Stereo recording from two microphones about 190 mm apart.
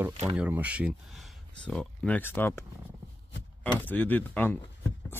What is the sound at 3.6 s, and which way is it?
Speech, 10° left (ahead or behind).